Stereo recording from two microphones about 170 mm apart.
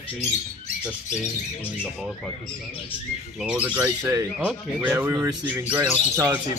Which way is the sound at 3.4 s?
10° right (ahead or behind).